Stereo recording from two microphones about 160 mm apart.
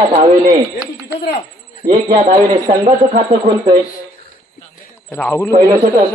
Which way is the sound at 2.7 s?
50° right (ahead or behind).